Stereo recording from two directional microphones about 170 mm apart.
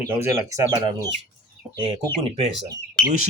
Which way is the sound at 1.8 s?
30° right (ahead or behind).